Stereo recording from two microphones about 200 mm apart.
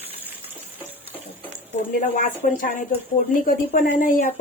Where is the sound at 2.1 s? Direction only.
40° left (ahead or behind).